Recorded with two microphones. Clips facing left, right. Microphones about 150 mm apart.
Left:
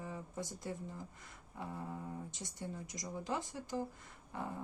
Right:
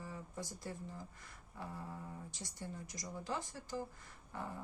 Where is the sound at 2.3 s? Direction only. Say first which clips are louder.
Left 3 dB; 20° left (ahead or behind).